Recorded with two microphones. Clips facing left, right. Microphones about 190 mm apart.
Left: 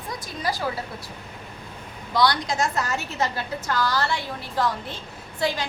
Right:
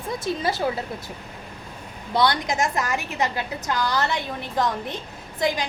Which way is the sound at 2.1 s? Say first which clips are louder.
Right 1 dB; 20° right (ahead or behind).